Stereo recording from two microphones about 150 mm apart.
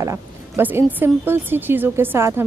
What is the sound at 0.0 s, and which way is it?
A woman's voice, 15° right (ahead or behind).